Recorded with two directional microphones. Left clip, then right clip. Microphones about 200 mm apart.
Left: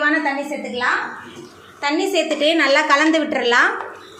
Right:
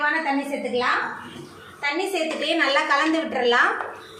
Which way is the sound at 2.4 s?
45° left (ahead or behind).